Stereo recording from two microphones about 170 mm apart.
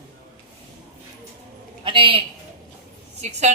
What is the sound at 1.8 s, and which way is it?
Speech, 30° right (ahead or behind).